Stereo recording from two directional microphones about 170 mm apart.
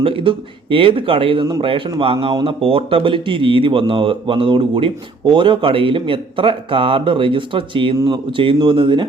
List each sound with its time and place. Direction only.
0.0 s speech: 30° right (ahead or behind)